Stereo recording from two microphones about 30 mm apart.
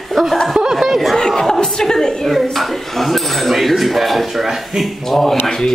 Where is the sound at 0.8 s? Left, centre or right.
Centre.